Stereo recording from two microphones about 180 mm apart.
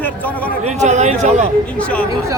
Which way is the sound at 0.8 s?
40° right (ahead or behind).